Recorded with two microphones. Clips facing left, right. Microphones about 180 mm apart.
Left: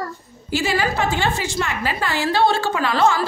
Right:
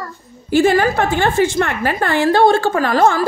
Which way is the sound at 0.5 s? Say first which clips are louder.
Right 8 dB; 55° right (ahead or behind).